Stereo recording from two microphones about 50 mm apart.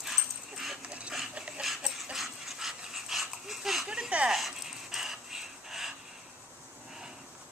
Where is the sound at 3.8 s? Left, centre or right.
Centre.